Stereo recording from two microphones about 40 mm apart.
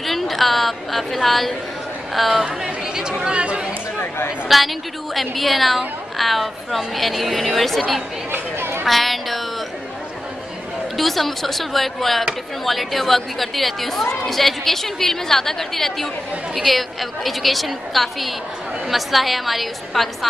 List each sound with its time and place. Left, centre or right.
0.0 s a woman's voice: centre
2.4 s speech: centre
4.5 s a woman's voice: centre
8.3 s chatter: right
8.8 s a woman's voice: centre
11.0 s a woman's voice: centre